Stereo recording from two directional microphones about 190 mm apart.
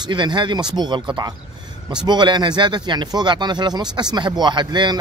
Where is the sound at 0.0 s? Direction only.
25° right (ahead or behind).